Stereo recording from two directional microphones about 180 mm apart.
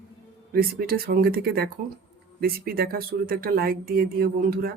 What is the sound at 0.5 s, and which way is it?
Speech, 55° right (ahead or behind).